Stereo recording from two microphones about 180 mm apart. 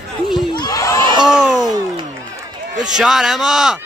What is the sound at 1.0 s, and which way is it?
Speech, 25° right (ahead or behind).